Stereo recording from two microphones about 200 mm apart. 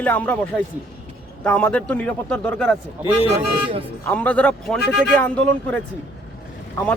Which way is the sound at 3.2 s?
30° right (ahead or behind).